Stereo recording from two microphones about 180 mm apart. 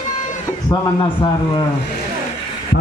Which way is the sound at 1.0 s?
25° left (ahead or behind).